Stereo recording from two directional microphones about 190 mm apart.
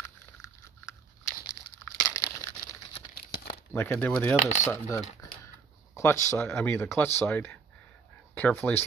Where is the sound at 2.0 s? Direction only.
15° left (ahead or behind).